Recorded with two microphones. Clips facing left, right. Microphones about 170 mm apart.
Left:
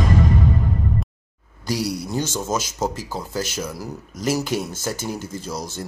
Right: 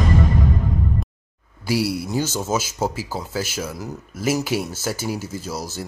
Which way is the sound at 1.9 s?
5° right (ahead or behind).